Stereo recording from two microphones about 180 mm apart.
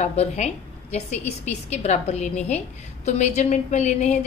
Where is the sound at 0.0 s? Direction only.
35° left (ahead or behind).